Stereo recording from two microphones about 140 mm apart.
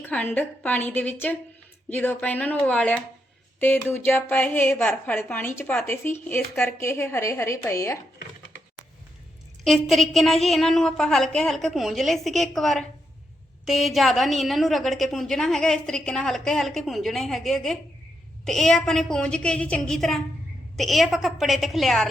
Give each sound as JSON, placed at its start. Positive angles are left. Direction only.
{"t": 0.0, "sound": "a woman's voice", "side_deg": 15}
{"t": 9.6, "sound": "a woman's voice", "side_deg": 0}